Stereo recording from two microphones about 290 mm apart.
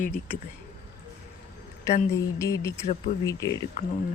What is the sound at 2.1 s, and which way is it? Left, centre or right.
Speech, centre.